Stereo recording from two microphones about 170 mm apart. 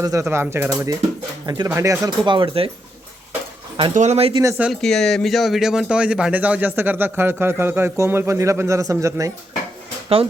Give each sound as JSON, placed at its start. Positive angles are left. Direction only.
{"t": 0.0, "sound": "speech", "side_deg": -20}
{"t": 3.9, "sound": "speech", "side_deg": -40}
{"t": 4.5, "sound": "speech", "side_deg": -5}